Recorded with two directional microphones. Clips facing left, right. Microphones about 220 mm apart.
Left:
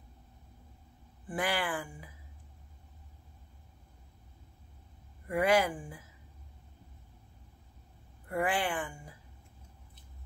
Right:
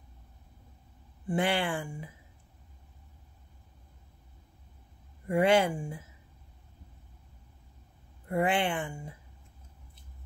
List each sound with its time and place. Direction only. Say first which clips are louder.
1.2 s speech: right 5 dB; 25° right (ahead or behind)
5.3 s speech: right 3 dB; 25° right (ahead or behind)
8.3 s speech: right 4 dB; 25° right (ahead or behind)